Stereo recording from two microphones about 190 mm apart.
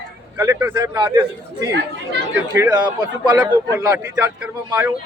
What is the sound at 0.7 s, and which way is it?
Speech, 25° right (ahead or behind).